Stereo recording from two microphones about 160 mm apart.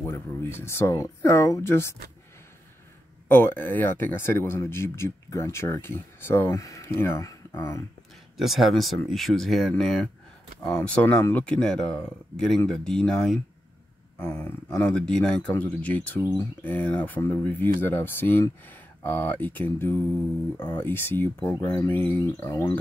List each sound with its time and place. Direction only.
0.0 s speech: 15° left (ahead or behind)
3.3 s speech: 15° left (ahead or behind)
8.4 s speech: centre (ahead or behind); by 22.8 s 15° left (ahead or behind)